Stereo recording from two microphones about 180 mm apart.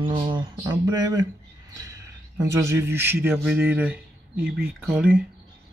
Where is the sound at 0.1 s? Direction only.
25° right (ahead or behind).